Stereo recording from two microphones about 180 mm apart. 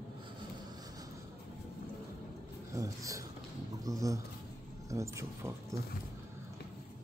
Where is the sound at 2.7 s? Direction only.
20° right (ahead or behind).